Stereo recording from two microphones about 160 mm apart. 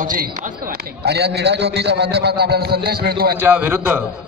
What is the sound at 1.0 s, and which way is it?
A man's voice, 90° right.